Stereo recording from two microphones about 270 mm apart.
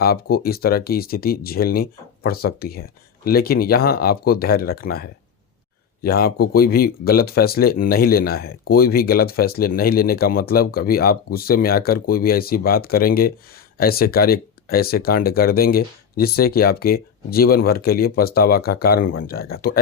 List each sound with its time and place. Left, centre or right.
0.0 s speech: left